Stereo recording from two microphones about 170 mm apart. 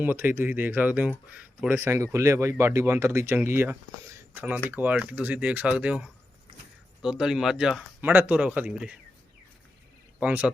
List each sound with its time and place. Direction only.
0.0 s speech: 10° right (ahead or behind)
10.2 s speech: 10° right (ahead or behind)